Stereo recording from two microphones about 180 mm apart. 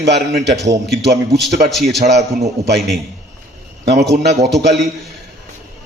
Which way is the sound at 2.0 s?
40° right (ahead or behind).